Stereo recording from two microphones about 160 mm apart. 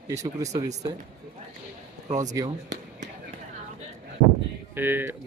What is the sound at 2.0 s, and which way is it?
Speech, 50° right (ahead or behind).